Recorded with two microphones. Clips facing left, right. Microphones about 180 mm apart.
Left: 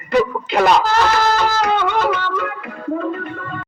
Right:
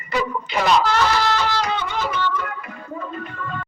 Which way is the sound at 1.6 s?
60° left (ahead or behind).